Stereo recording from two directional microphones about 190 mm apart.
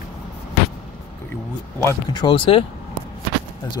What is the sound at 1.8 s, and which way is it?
Speech, 20° left (ahead or behind).